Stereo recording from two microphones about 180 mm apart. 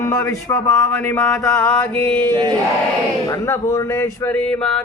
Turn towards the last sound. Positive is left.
turn(degrees=10)  # may be behind; listen again after turning